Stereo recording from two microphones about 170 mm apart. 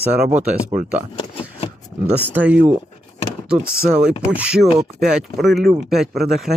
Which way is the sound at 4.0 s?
5° right (ahead or behind).